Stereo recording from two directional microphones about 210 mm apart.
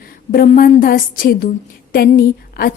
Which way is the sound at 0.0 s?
45° left (ahead or behind).